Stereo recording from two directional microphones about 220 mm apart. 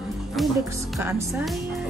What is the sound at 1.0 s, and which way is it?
Speech, 10° right (ahead or behind).